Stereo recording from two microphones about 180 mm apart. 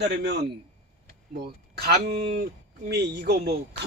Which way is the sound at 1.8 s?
60° right (ahead or behind).